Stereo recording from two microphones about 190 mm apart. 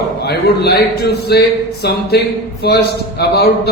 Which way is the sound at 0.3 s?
60° left (ahead or behind).